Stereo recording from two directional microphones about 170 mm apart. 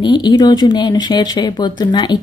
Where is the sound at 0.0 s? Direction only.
25° left (ahead or behind).